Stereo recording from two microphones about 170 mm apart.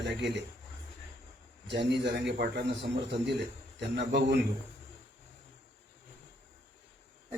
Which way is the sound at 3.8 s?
90° right.